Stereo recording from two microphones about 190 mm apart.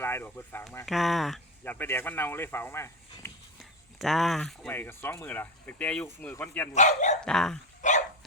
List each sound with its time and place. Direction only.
0.0 s speech: 10° left (ahead or behind)
0.9 s speech: centre (ahead or behind)
3.6 s speech: centre (ahead or behind)
6.7 s speech: 40° left (ahead or behind)
7.2 s speech: 5° left (ahead or behind)
7.8 s dog: 40° left (ahead or behind)